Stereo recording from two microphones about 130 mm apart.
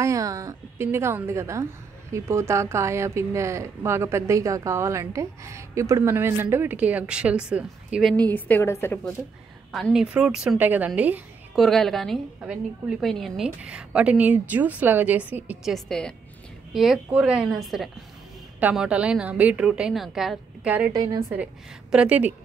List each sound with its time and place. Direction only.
0.0 s speech: 25° right (ahead or behind); by 8.2 s 5° right (ahead or behind)
8.2 s a woman's voice: 15° left (ahead or behind)
9.7 s a woman's voice: centre (ahead or behind)
11.5 s a woman's voice: centre (ahead or behind)
15.6 s a woman's voice: 5° left (ahead or behind)
20.9 s speech: 30° right (ahead or behind)
21.9 s a woman's voice: 10° right (ahead or behind)